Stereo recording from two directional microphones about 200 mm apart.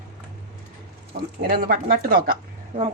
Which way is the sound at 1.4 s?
45° right (ahead or behind).